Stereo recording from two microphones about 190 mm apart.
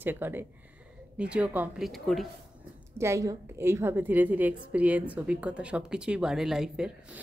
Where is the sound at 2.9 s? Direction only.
15° right (ahead or behind).